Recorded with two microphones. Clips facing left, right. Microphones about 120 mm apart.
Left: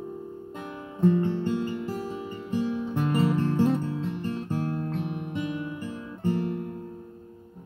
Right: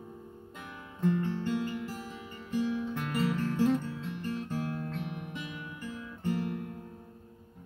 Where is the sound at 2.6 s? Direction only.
40° left (ahead or behind).